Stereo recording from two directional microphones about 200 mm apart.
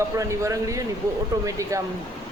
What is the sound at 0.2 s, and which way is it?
Speech, 15° right (ahead or behind).